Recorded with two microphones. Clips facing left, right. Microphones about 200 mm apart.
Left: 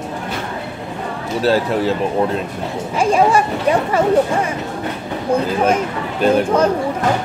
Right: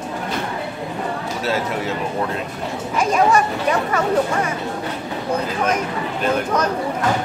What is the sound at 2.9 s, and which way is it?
Speech, 30° left (ahead or behind).